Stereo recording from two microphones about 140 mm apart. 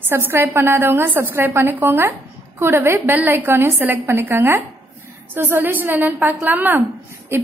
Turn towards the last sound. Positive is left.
turn(degrees=-15)  # may be behind; listen again after turning